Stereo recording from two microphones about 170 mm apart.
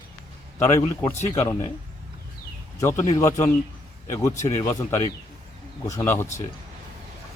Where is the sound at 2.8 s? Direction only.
15° left (ahead or behind).